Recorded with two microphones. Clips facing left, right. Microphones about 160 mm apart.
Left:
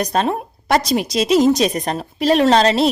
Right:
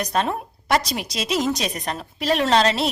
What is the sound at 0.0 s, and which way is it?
Speech, 30° left (ahead or behind).